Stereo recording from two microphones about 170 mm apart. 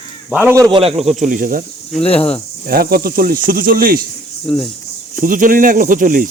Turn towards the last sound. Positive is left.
turn(degrees=-55)  # may be behind; listen again after turning